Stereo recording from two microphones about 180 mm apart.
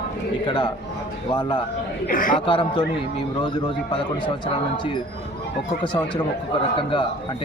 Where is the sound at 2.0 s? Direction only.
50° left (ahead or behind).